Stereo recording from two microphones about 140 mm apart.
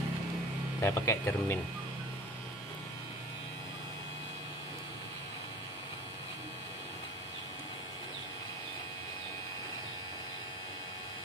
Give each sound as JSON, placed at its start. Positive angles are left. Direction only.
{"t": 0.7, "sound": "speech", "side_deg": 20}